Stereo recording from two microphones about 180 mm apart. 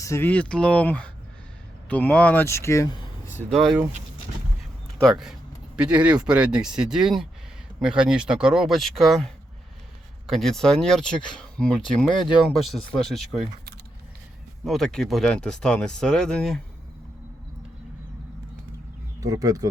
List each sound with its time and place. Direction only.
0.0 s speech: 15° left (ahead or behind)
3.5 s speech: centre (ahead or behind)
4.9 s speech: centre (ahead or behind)
14.6 s speech: centre (ahead or behind)
19.2 s speech: 20° right (ahead or behind)